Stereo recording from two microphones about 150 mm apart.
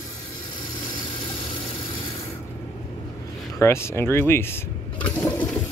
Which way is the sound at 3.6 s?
15° left (ahead or behind).